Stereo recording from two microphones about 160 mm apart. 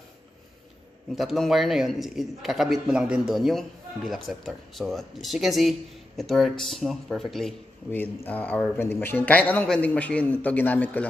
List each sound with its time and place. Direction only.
1.1 s a man's voice: centre (ahead or behind)
7.9 s speech: 10° left (ahead or behind)